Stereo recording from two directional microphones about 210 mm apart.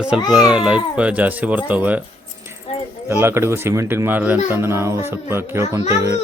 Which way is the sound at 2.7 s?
30° left (ahead or behind).